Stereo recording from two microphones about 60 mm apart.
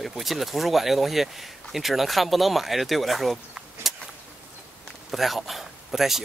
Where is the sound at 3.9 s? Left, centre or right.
Centre.